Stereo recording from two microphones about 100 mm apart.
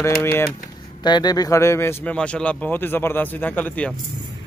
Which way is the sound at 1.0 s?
45° left (ahead or behind).